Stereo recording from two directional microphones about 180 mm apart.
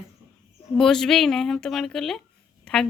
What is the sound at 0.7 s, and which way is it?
Speech, 5° left (ahead or behind).